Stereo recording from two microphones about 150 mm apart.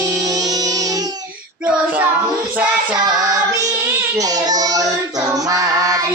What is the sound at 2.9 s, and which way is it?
Child singing, 25° right (ahead or behind).